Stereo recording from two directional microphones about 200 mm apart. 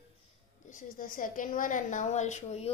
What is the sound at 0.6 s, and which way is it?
A woman's voice, 40° left (ahead or behind).